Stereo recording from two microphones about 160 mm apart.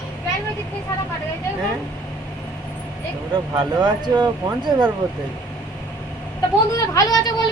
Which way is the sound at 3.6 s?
30° right (ahead or behind).